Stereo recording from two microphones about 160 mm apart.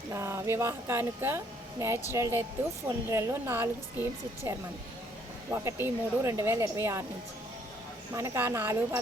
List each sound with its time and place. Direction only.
0.1 s speech: 15° right (ahead or behind)
8.1 s speech: 20° right (ahead or behind)